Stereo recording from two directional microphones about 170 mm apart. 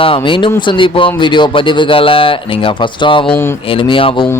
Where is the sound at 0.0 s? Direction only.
30° left (ahead or behind).